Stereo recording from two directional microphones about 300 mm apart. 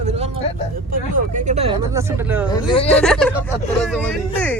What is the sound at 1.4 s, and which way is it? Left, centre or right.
Speech, right.